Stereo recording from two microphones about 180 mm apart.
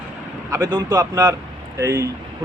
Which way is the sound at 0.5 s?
20° right (ahead or behind).